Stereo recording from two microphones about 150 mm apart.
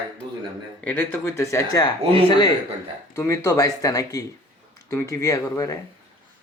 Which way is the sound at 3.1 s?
20° left (ahead or behind).